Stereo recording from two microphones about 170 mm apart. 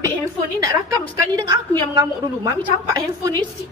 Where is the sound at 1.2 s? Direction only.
20° right (ahead or behind).